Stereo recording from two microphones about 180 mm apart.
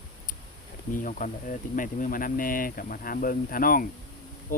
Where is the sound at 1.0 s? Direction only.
45° left (ahead or behind).